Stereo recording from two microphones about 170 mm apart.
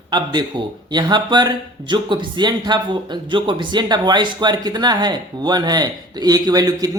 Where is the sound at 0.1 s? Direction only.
25° right (ahead or behind).